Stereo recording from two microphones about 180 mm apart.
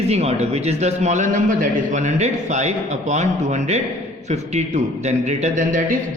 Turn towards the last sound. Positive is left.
turn(degrees=-45)  # may be behind; listen again after turning